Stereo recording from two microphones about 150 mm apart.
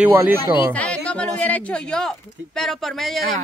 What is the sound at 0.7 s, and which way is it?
A man's voice, 5° left (ahead or behind).